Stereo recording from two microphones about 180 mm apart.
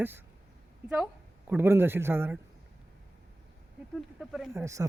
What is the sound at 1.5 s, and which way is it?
Speech, 10° right (ahead or behind).